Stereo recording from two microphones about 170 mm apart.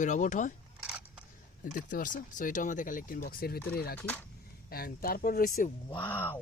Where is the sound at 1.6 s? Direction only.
50° left (ahead or behind).